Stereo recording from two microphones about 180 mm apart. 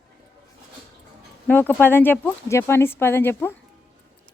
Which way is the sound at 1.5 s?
10° left (ahead or behind).